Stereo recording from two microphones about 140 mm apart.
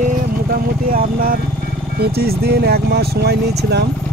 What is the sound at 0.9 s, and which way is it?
Speech, 90° right.